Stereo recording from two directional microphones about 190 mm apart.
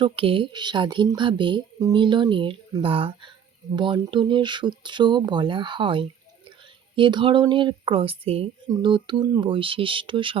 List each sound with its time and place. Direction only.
0.0 s speech: 30° right (ahead or behind)